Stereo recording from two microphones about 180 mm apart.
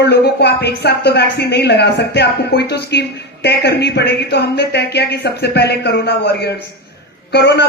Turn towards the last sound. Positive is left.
turn(degrees=65)  # may be behind; listen again after turning